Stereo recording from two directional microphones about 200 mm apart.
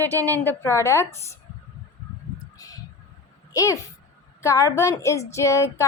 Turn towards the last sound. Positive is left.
turn(degrees=15)  # may be behind; listen again after turning